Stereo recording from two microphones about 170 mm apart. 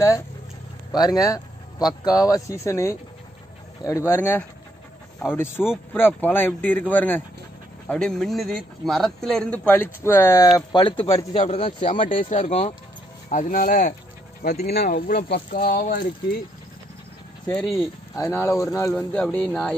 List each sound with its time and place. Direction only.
0.9 s speech: 20° left (ahead or behind)
5.7 s a man's voice: 10° left (ahead or behind)
10.7 s speech: 30° left (ahead or behind)
11.8 s speech: 50° left (ahead or behind)
14.7 s speech: 70° left (ahead or behind)
15.5 s speech: 60° left (ahead or behind)
17.6 s a man's voice: centre (ahead or behind)
18.1 s speech: 15° left (ahead or behind)
18.9 s speech: 5° left (ahead or behind)